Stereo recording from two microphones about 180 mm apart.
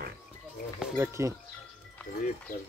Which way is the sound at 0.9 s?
15° right (ahead or behind).